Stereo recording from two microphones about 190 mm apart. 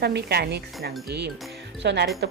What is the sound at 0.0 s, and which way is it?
Speech, 60° right (ahead or behind).